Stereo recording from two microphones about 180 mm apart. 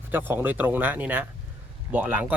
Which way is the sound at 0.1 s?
10° right (ahead or behind).